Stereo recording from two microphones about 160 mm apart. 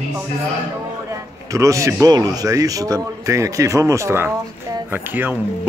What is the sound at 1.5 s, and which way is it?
Speech, 20° right (ahead or behind).